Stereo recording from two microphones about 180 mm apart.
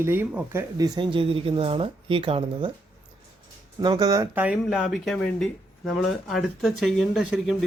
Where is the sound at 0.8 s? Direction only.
25° right (ahead or behind).